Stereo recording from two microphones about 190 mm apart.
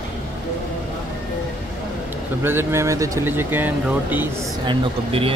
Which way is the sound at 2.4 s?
10° right (ahead or behind).